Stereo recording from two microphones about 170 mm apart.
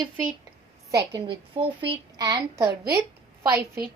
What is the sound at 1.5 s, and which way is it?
A child's voice, 30° right (ahead or behind).